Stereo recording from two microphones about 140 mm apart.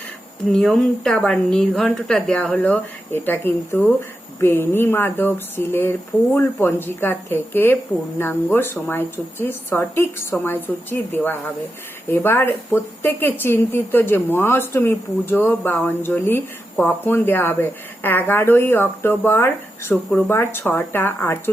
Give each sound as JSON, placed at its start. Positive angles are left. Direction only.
{"t": 0.4, "sound": "a woman's voice", "side_deg": 5}